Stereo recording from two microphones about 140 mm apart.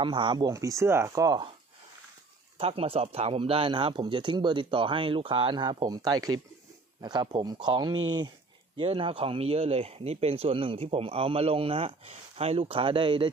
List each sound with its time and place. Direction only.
0.0 s speech: 35° right (ahead or behind)
2.6 s speech: 45° right (ahead or behind)